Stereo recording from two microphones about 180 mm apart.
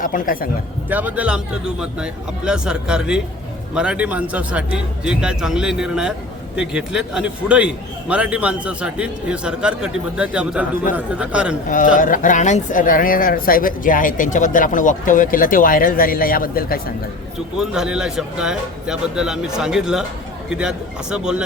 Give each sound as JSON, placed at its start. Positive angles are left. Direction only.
{"t": 0.0, "sound": "speech", "side_deg": 50}
{"t": 0.9, "sound": "a man's voice", "side_deg": -10}
{"t": 11.9, "sound": "speech", "side_deg": 50}
{"t": 17.6, "sound": "speech", "side_deg": -5}